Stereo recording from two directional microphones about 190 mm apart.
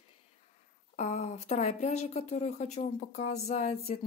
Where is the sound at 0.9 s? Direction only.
35° left (ahead or behind).